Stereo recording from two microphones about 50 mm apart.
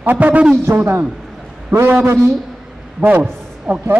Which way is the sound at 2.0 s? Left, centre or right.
Right.